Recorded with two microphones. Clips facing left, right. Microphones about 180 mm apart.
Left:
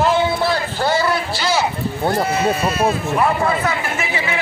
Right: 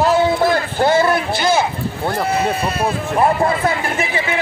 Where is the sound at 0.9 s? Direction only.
50° right (ahead or behind).